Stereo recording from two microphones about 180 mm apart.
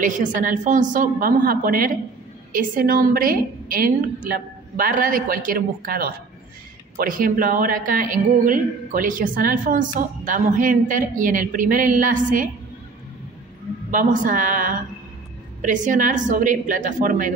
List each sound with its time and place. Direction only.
0.0 s a woman's voice: 45° right (ahead or behind)
13.9 s a woman's voice: 45° right (ahead or behind)